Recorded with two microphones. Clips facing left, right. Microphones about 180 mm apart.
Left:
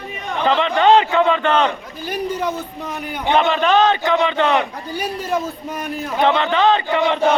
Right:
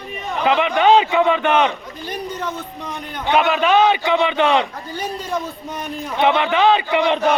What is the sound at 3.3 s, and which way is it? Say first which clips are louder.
A man's voice: even; 5° right (ahead or behind).